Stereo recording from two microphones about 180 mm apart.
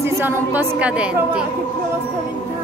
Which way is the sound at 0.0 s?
10° right (ahead or behind).